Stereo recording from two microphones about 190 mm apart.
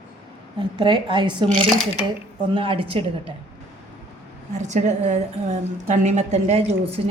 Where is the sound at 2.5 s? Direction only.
30° right (ahead or behind).